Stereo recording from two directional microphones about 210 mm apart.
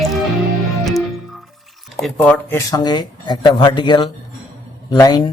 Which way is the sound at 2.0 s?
5° left (ahead or behind).